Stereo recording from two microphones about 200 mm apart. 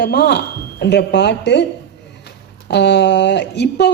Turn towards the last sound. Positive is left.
turn(degrees=60)  # may be behind; listen again after turning